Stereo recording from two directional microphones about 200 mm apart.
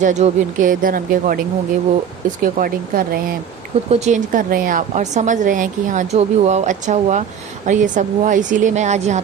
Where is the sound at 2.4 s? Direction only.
45° right (ahead or behind).